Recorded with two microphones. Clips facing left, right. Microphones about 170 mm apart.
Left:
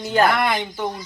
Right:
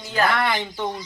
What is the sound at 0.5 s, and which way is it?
Speech, 5° left (ahead or behind).